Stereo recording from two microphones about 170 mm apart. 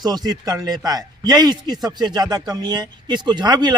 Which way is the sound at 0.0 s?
25° right (ahead or behind).